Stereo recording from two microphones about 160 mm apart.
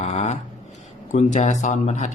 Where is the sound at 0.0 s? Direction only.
45° left (ahead or behind).